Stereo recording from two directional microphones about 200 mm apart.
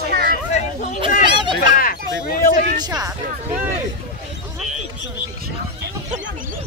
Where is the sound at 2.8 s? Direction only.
20° right (ahead or behind).